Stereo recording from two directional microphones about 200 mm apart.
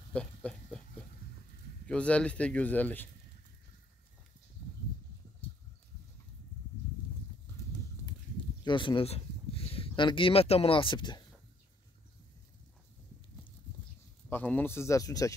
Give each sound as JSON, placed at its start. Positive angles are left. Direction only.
{"t": 0.1, "sound": "a sound", "side_deg": 5}
{"t": 1.9, "sound": "speech", "side_deg": 5}
{"t": 8.6, "sound": "speech", "side_deg": 25}
{"t": 14.3, "sound": "speech", "side_deg": 10}